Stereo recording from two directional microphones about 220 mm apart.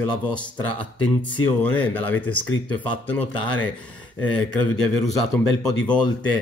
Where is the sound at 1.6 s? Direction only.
10° left (ahead or behind).